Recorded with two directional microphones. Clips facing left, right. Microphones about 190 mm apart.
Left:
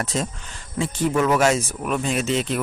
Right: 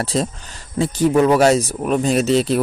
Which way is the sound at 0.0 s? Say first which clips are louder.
Right 5 dB; 35° right (ahead or behind).